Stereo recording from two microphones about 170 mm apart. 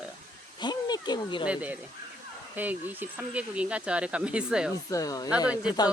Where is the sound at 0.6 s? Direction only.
25° left (ahead or behind).